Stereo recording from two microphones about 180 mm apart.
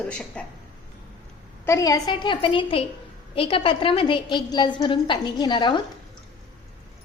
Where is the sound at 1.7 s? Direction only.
20° left (ahead or behind).